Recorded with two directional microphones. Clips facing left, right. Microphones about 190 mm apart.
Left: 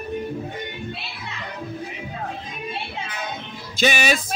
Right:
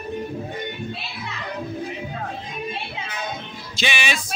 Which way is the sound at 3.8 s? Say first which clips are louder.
Left 6 dB; 40° left (ahead or behind).